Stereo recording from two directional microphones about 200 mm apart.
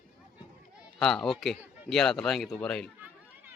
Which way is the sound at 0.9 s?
Centre (ahead or behind).